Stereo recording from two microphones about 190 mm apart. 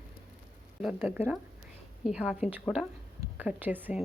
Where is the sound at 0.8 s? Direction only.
5° right (ahead or behind).